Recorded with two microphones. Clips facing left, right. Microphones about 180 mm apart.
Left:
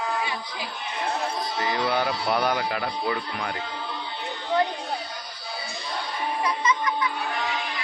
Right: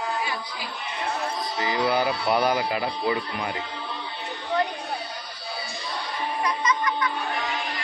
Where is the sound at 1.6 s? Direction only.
10° right (ahead or behind).